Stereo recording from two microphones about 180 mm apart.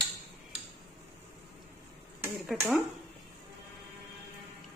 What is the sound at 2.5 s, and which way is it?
Speech, 10° right (ahead or behind).